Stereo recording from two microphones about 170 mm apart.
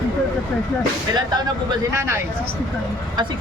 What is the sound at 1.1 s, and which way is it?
Speech, 25° right (ahead or behind).